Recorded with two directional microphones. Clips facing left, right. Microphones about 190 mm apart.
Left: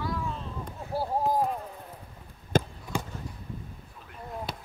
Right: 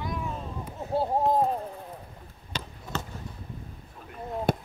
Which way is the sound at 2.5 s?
50° left (ahead or behind).